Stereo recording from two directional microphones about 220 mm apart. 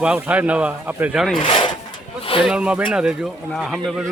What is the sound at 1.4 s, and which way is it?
Wood, 25° left (ahead or behind).